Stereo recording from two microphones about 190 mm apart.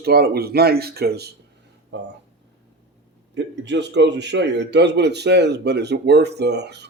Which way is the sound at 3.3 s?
70° right (ahead or behind).